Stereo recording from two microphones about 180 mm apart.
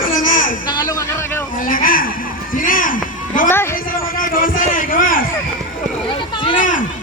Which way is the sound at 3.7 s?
50° left (ahead or behind).